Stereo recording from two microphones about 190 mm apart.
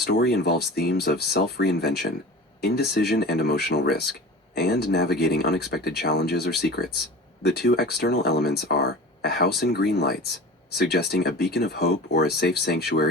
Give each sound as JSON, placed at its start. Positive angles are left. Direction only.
{"t": 0.0, "sound": "speech", "side_deg": 55}